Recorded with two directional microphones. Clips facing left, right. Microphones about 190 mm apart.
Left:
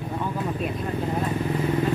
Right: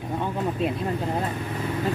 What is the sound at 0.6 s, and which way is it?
Speech, 25° right (ahead or behind).